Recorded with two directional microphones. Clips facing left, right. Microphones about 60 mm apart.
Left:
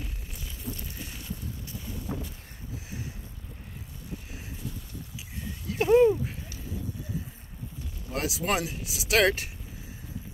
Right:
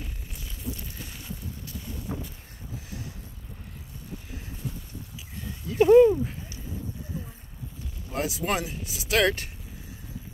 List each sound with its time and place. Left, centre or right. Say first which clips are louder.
0.0 s a sound: even; centre
5.7 s speech: right 4 dB; centre
8.1 s speech: right 1 dB; centre